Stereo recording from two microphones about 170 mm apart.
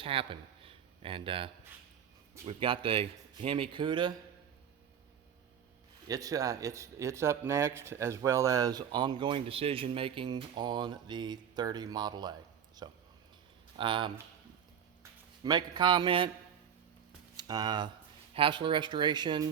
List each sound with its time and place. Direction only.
0.0 s speech: 30° right (ahead or behind)
2.5 s speech: 30° right (ahead or behind)
6.1 s speech: 20° right (ahead or behind)
15.4 s speech: 25° right (ahead or behind)
17.3 s speech: 25° right (ahead or behind)